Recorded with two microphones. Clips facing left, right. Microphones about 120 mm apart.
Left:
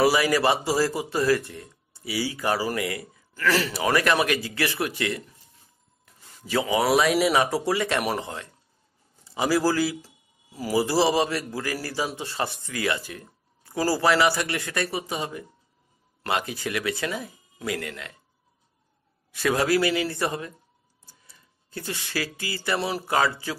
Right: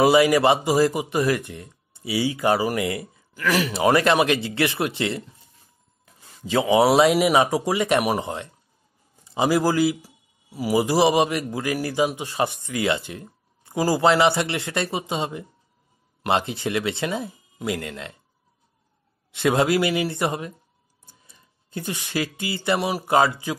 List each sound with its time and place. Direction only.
0.0 s a man's voice: 20° right (ahead or behind)
19.3 s a man's voice: 25° right (ahead or behind)